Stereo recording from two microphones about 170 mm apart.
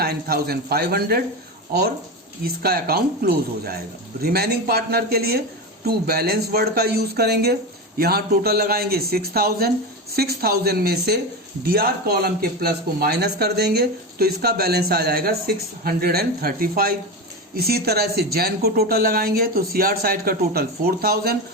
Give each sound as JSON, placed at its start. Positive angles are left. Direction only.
{"t": 0.0, "sound": "speech", "side_deg": -65}
{"t": 2.4, "sound": "speech", "side_deg": -65}